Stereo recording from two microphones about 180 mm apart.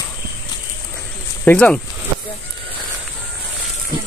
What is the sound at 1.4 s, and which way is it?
Speech, 5° left (ahead or behind).